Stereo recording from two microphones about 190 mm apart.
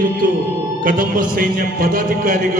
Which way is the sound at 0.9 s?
45° right (ahead or behind).